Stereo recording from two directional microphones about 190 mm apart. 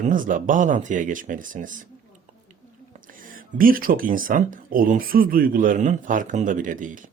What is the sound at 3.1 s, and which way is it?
A man's voice, 45° right (ahead or behind).